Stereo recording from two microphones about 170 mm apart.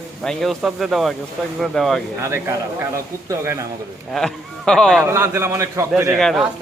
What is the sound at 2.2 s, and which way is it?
A man's voice, 15° right (ahead or behind).